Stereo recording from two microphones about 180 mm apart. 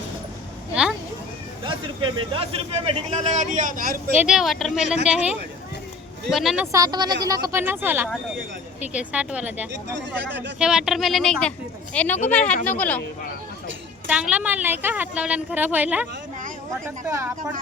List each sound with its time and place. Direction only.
0.7 s vehicle: 5° right (ahead or behind)
1.6 s a man's voice: 30° right (ahead or behind); by 4.2 s 50° right (ahead or behind)
4.2 s speech: 5° right (ahead or behind)
6.7 s a woman's voice: 20° right (ahead or behind)
10.2 s a man's voice: 85° right
10.6 s speech: 5° right (ahead or behind)
14.1 s a woman's voice: 5° right (ahead or behind)